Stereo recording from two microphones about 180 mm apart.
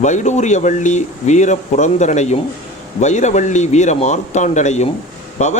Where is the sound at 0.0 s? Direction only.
40° left (ahead or behind).